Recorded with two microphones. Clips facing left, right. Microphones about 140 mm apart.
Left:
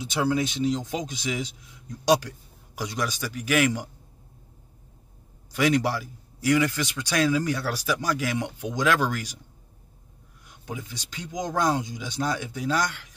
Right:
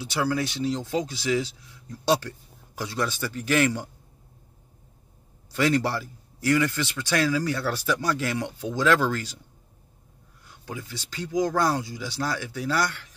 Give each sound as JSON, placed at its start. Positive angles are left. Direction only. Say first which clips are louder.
{"t": 0.0, "sound": "a man's voice", "louder": "left 1 dB", "side_deg": 20}
{"t": 5.6, "sound": "a man's voice", "louder": "even", "side_deg": 15}
{"t": 10.4, "sound": "speech", "louder": "left 1 dB", "side_deg": 20}